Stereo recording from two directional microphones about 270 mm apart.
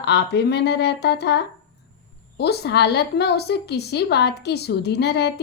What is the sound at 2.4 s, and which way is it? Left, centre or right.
A woman's voice, left.